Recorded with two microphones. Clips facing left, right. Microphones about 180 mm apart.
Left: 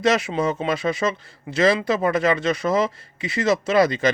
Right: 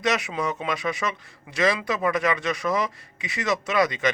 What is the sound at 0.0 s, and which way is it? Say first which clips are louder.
A man's voice: left 5 dB; 30° left (ahead or behind).